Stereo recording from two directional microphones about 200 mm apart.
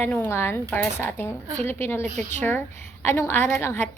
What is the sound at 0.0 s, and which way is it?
A woman's voice, 10° left (ahead or behind).